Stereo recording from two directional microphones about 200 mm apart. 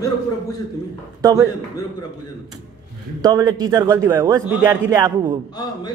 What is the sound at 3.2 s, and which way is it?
Speech, 20° right (ahead or behind).